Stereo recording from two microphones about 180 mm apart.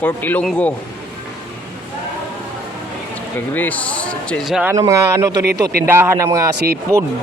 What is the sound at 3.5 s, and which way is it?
Speech, 10° left (ahead or behind).